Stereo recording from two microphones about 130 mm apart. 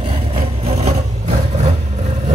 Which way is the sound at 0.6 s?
55° right (ahead or behind).